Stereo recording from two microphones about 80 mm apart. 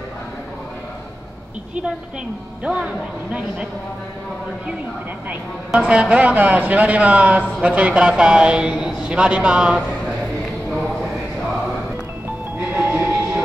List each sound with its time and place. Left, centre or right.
2.6 s a man's voice: centre
5.7 s a man's voice: centre
12.9 s music: centre